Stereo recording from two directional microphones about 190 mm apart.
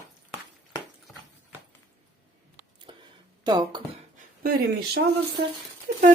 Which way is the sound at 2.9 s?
25° right (ahead or behind).